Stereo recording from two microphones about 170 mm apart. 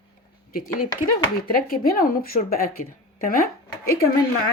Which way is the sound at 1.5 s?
60° left (ahead or behind).